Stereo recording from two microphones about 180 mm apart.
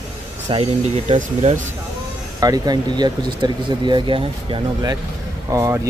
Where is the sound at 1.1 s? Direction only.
40° right (ahead or behind).